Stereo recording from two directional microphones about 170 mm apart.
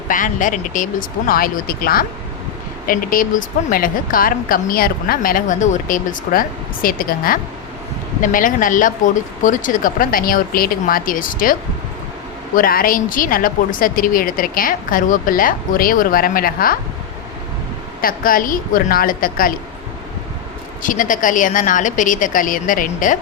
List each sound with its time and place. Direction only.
0.1 s a woman's voice: 50° left (ahead or behind)
12.5 s a woman's voice: 55° left (ahead or behind)
18.0 s a woman's voice: 55° left (ahead or behind)
20.8 s speech: 50° left (ahead or behind)